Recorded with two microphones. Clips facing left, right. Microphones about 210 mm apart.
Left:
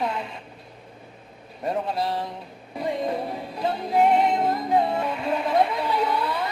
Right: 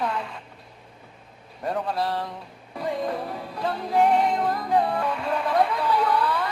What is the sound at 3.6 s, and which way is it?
Music, 20° left (ahead or behind).